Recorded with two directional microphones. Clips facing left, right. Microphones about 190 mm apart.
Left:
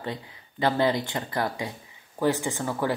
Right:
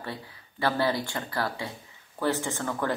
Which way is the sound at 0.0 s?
20° left (ahead or behind).